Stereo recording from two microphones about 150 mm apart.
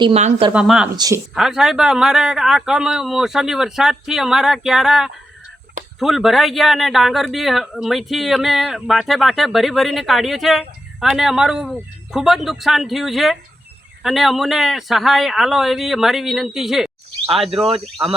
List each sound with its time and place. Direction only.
0.0 s speech: 45° right (ahead or behind)
0.5 s speech: 5° right (ahead or behind)
0.9 s speech: 25° right (ahead or behind)
1.4 s speech: 5° right (ahead or behind)
18.0 s speech: 20° right (ahead or behind)